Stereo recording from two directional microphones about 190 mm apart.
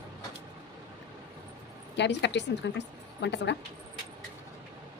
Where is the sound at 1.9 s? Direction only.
65° left (ahead or behind).